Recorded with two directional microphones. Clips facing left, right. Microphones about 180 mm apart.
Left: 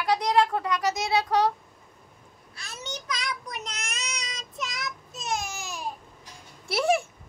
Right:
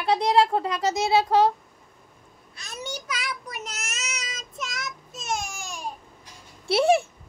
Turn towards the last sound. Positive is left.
turn(degrees=-25)  # may be behind; listen again after turning